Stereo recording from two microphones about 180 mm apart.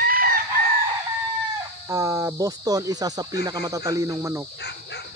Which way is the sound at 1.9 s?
15° right (ahead or behind).